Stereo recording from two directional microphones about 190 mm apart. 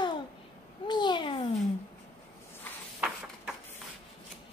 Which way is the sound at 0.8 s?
25° left (ahead or behind).